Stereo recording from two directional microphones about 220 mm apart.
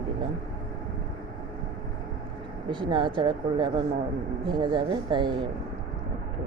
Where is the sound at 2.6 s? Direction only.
20° right (ahead or behind).